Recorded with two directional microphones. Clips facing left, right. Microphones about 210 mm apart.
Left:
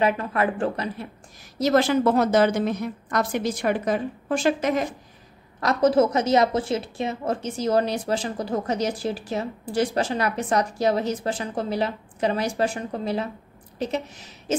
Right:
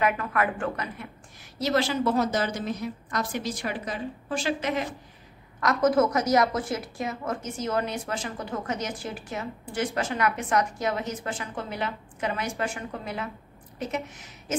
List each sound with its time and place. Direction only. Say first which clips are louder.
0.0 s speech: left 3 dB; 30° left (ahead or behind)
1.6 s a woman's voice: left 6 dB; 50° left (ahead or behind)
5.6 s a woman's voice: left 3 dB; 30° left (ahead or behind)